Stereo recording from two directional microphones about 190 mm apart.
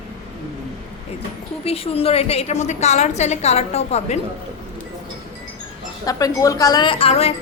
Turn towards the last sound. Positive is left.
turn(degrees=30)  # may be behind; listen again after turning